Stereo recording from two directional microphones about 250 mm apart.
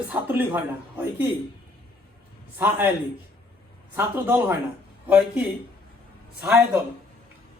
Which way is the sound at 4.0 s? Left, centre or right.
Centre.